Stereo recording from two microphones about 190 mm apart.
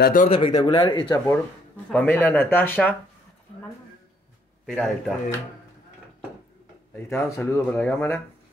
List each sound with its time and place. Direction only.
0.0 s speech: 45° left (ahead or behind)
0.3 s speech: 25° left (ahead or behind)
4.6 s speech: 5° left (ahead or behind)
7.0 s speech: 15° left (ahead or behind)